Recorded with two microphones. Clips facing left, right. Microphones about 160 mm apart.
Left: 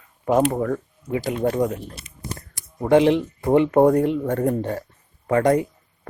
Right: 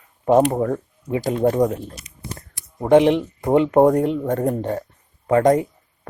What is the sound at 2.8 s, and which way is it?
Speech, 20° right (ahead or behind).